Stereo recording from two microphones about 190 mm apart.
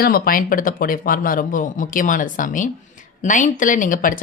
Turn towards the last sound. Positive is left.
turn(degrees=45)  # may be behind; listen again after turning